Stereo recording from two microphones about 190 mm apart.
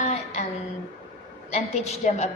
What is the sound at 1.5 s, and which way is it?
Speech, 35° left (ahead or behind).